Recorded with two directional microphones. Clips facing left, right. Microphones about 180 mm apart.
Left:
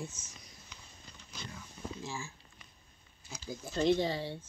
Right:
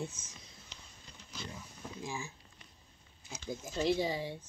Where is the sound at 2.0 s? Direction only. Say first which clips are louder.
Right 4 dB; 15° right (ahead or behind).